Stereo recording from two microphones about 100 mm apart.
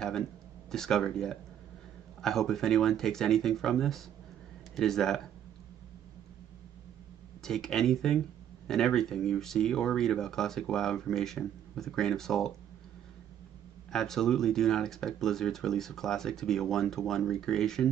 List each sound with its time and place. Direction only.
0.7 s speech: 5° left (ahead or behind)
7.4 s speech: 5° left (ahead or behind)
13.9 s speech: 5° left (ahead or behind)